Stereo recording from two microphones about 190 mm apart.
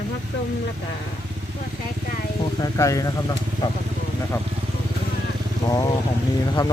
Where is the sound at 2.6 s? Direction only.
15° left (ahead or behind).